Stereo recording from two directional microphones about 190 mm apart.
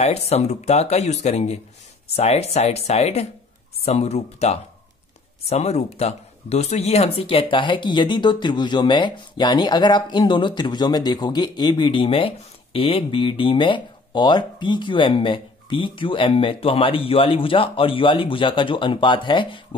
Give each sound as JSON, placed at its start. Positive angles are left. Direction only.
{"t": 0.3, "sound": "speech", "side_deg": 35}